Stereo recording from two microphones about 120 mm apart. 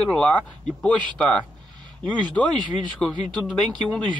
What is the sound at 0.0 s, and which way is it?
Speech, 10° left (ahead or behind).